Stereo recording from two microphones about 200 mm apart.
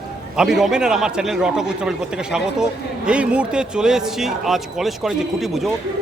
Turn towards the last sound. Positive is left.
turn(degrees=0)  # may be behind; listen again after turning